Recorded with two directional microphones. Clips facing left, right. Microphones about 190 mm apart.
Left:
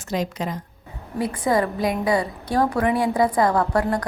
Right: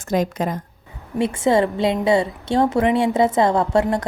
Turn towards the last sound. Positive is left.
turn(degrees=-25)  # may be behind; listen again after turning